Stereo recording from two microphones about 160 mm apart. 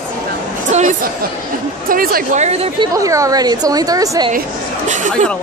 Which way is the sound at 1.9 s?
65° right (ahead or behind).